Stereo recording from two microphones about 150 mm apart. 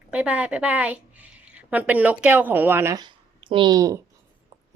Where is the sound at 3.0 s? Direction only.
35° right (ahead or behind).